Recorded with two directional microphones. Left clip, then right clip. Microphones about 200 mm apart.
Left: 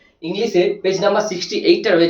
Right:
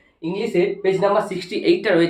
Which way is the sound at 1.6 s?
25° right (ahead or behind).